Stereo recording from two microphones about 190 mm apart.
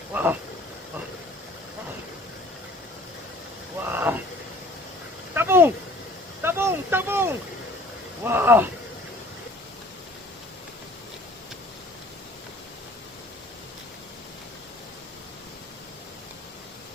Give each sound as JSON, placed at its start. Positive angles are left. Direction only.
{"t": 0.1, "sound": "speech", "side_deg": -10}
{"t": 3.8, "sound": "vehicle", "side_deg": -10}
{"t": 5.3, "sound": "a sound", "side_deg": -10}